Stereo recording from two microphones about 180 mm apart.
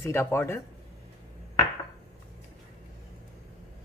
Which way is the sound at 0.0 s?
15° left (ahead or behind).